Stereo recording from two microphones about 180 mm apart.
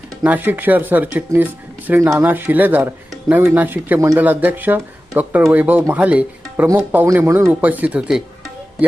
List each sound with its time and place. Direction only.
0.2 s speech: 10° right (ahead or behind)